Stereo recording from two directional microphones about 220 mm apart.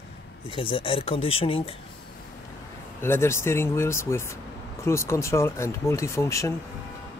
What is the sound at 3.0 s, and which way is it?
Speech, 10° left (ahead or behind).